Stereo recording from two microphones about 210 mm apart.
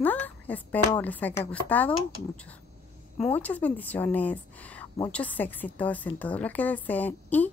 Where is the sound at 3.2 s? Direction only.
5° left (ahead or behind).